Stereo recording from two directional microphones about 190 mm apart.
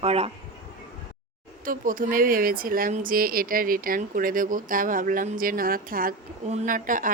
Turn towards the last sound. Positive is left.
turn(degrees=-45)  # may be behind; listen again after turning